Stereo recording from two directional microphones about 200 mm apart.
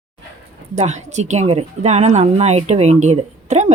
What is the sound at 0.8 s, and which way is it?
A woman's voice, 35° right (ahead or behind).